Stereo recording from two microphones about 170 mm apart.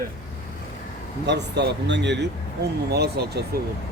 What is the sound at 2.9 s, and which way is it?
Speech, 70° right (ahead or behind).